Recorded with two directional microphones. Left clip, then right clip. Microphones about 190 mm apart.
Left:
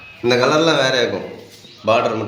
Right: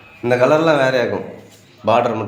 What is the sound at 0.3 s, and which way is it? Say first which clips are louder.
A man's voice: right 1 dB; 55° right (ahead or behind).